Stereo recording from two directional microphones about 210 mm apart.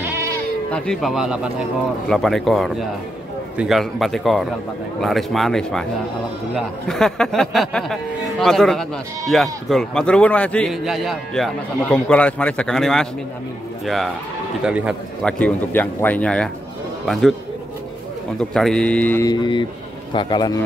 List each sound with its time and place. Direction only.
0.0 s bleat: 10° right (ahead or behind)
0.7 s a man's voice: 5° left (ahead or behind)
6.9 s a man's voice: centre (ahead or behind)
18.4 s a man's voice: 5° left (ahead or behind); by 20.6 s 20° left (ahead or behind)